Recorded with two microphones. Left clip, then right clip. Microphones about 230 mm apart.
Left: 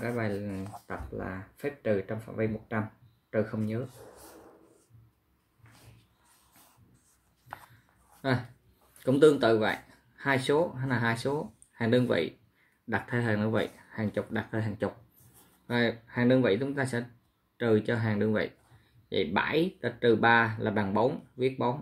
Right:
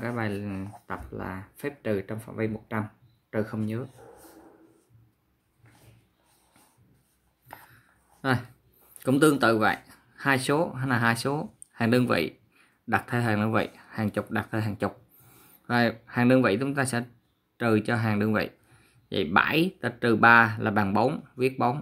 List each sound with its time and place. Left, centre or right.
0.0 s speech: right
9.0 s speech: right